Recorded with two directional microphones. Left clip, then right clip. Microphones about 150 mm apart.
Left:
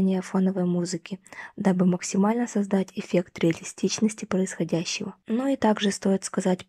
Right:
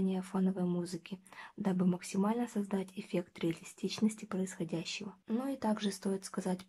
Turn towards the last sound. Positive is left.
turn(degrees=40)  # may be behind; listen again after turning